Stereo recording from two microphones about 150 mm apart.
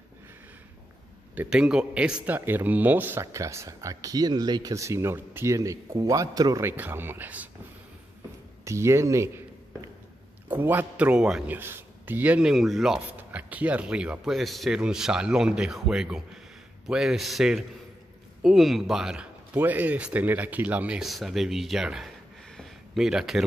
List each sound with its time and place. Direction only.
1.3 s a man's voice: 10° right (ahead or behind)
8.6 s speech: 20° right (ahead or behind)
10.5 s a man's voice: 15° right (ahead or behind)
22.6 s a sound: centre (ahead or behind)